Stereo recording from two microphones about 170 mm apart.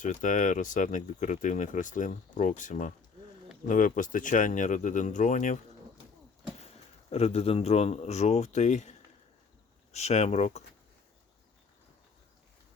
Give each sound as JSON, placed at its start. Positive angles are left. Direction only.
{"t": 0.0, "sound": "speech", "side_deg": 45}
{"t": 7.1, "sound": "speech", "side_deg": 35}